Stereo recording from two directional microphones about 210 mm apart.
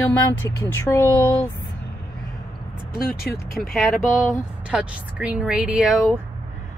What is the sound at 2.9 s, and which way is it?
Speech, 45° left (ahead or behind).